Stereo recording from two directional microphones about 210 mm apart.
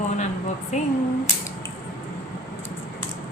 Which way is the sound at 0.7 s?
30° left (ahead or behind).